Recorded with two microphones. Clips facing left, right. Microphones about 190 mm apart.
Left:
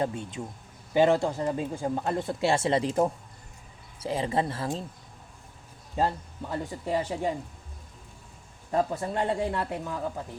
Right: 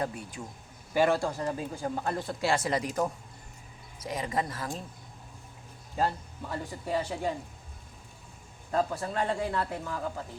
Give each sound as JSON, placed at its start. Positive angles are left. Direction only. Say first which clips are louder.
{"t": 0.0, "sound": "speech", "louder": "left 4 dB", "side_deg": 25}
{"t": 6.0, "sound": "speech", "louder": "left 2 dB", "side_deg": 20}
{"t": 8.7, "sound": "speech", "louder": "left 2 dB", "side_deg": 20}